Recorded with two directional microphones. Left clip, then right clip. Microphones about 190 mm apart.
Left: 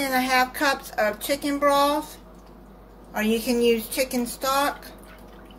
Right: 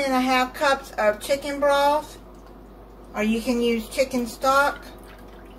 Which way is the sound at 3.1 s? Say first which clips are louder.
Left 1 dB; 55° left (ahead or behind).